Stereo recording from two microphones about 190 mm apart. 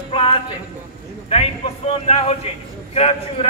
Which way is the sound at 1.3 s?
35° left (ahead or behind).